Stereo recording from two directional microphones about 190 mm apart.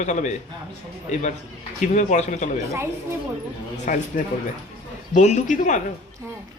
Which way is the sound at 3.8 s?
45° left (ahead or behind).